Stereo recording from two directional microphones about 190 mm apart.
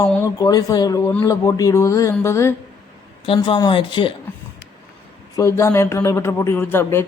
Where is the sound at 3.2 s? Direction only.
25° left (ahead or behind).